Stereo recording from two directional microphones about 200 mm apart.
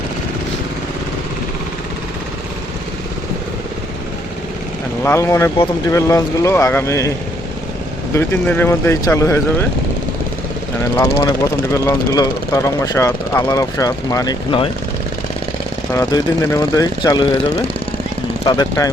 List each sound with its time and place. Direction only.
5.0 s speech: 15° left (ahead or behind)
8.1 s speech: 10° left (ahead or behind)
10.8 s speech: 15° left (ahead or behind)
15.9 s speech: 15° left (ahead or behind)